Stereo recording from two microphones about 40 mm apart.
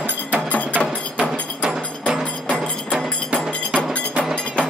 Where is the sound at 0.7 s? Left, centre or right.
Right.